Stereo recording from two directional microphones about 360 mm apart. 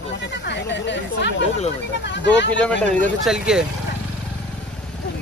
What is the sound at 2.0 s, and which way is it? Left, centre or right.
Speech, left.